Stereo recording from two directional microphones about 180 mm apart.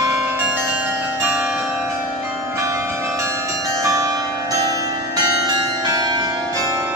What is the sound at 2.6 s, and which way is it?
Change ringing, 15° right (ahead or behind).